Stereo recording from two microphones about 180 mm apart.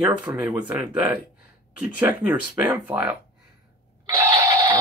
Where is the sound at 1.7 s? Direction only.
10° right (ahead or behind).